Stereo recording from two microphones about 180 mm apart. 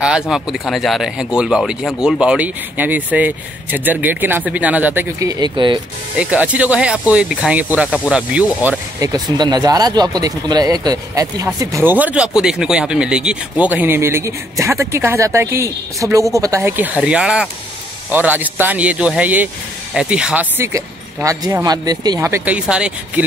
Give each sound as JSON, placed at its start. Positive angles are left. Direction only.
{"t": 0.3, "sound": "speech", "side_deg": 0}
{"t": 6.1, "sound": "speech", "side_deg": -5}
{"t": 9.0, "sound": "speech", "side_deg": -20}